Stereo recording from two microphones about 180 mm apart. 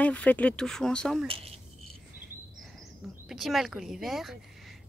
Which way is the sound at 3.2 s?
Centre (ahead or behind).